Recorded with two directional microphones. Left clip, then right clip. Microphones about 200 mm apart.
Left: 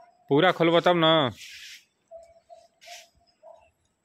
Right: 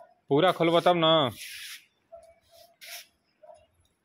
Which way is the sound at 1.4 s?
55° right (ahead or behind).